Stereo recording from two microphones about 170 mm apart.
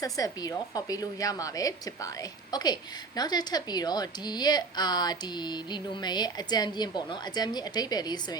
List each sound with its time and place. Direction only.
0.0 s a woman's voice: 20° left (ahead or behind)